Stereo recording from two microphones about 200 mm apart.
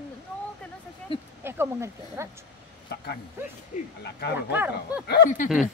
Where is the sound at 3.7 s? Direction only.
40° left (ahead or behind).